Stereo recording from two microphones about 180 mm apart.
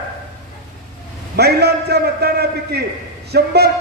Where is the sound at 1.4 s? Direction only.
65° right (ahead or behind).